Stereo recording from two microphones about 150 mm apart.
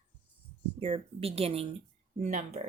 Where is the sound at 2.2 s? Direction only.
50° right (ahead or behind).